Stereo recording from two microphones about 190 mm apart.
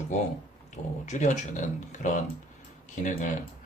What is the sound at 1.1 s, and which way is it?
Speech, 40° left (ahead or behind).